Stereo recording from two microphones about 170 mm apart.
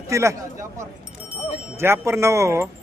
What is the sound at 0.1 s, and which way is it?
Speech, 15° right (ahead or behind).